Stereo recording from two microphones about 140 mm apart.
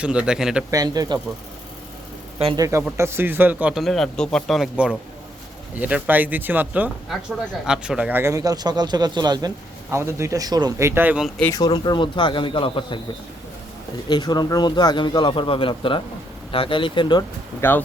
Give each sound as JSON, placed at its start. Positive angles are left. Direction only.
{"t": 0.0, "sound": "speech", "side_deg": -5}
{"t": 0.7, "sound": "speech", "side_deg": -25}
{"t": 2.6, "sound": "speech", "side_deg": -20}
{"t": 3.8, "sound": "a man's voice", "side_deg": 0}
{"t": 8.2, "sound": "speech", "side_deg": -25}
{"t": 9.9, "sound": "speech", "side_deg": -20}
{"t": 11.5, "sound": "speech", "side_deg": 30}
{"t": 14.1, "sound": "speech", "side_deg": 30}
{"t": 17.6, "sound": "speech", "side_deg": 15}